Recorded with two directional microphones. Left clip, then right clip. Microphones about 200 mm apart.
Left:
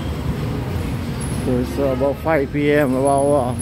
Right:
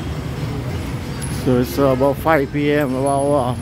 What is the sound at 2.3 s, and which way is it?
Speech, 10° right (ahead or behind).